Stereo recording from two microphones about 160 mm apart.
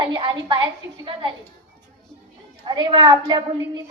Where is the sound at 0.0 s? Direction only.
30° right (ahead or behind).